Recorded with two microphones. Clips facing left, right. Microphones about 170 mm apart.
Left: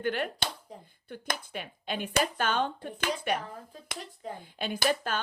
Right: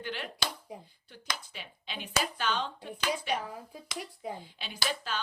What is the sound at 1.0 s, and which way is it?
Speech, 55° left (ahead or behind).